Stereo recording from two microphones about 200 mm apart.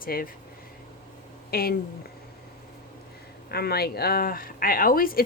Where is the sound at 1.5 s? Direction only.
50° left (ahead or behind).